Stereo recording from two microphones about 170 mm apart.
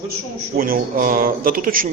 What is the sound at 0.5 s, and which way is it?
Speech, 55° right (ahead or behind).